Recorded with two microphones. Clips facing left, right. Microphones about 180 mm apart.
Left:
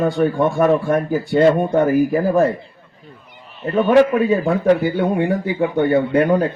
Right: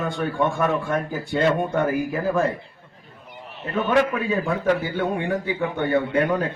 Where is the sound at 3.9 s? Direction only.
35° left (ahead or behind).